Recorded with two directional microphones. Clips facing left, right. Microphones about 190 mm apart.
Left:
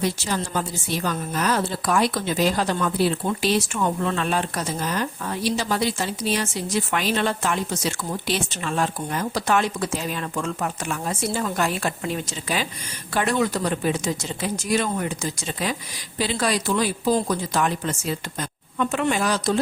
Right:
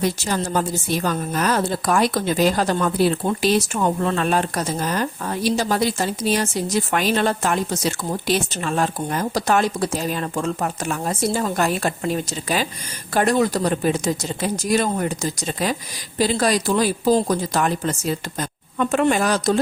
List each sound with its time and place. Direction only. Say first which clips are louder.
0.0 s a woman's voice: right 3 dB; 45° right (ahead or behind)